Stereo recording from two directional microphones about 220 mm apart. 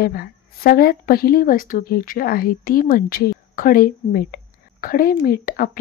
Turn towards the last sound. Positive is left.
turn(degrees=40)  # may be behind; listen again after turning